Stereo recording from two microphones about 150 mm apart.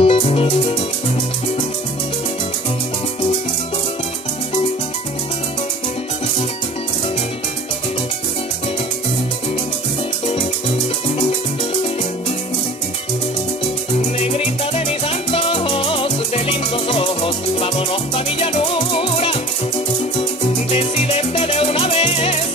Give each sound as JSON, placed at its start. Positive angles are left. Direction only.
{"t": 0.0, "sound": "music", "side_deg": 40}
{"t": 14.2, "sound": "music", "side_deg": 40}